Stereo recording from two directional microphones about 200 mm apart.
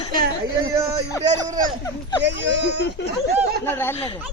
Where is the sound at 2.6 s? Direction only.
60° left (ahead or behind).